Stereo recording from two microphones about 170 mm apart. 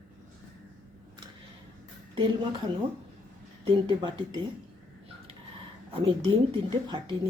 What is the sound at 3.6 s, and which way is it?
Speech, 30° right (ahead or behind).